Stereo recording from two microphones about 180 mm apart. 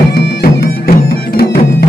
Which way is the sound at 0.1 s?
60° left (ahead or behind).